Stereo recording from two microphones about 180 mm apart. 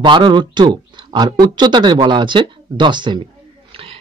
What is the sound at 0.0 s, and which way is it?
Speech, 25° right (ahead or behind).